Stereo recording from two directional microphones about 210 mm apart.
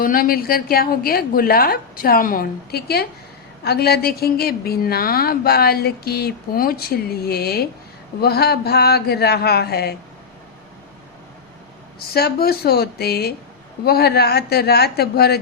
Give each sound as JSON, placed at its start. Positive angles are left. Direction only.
{"t": 0.0, "sound": "a woman's voice", "side_deg": 40}
{"t": 11.9, "sound": "a woman's voice", "side_deg": 50}